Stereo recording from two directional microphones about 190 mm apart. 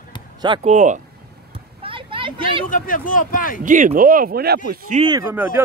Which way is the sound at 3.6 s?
45° right (ahead or behind).